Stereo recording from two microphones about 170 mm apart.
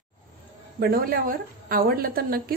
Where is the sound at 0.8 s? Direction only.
60° right (ahead or behind).